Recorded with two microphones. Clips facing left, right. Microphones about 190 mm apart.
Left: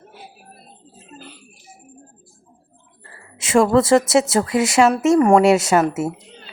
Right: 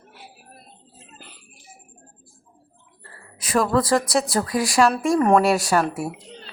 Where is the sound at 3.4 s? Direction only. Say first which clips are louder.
Left 6 dB; 25° left (ahead or behind).